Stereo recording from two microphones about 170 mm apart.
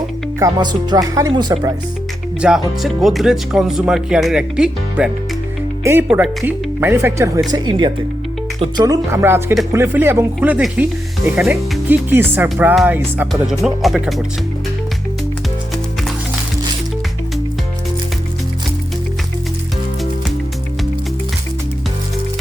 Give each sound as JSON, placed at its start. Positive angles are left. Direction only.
{"t": 0.3, "sound": "speech", "side_deg": -20}
{"t": 2.4, "sound": "speech", "side_deg": 0}
{"t": 12.7, "sound": "speech", "side_deg": 0}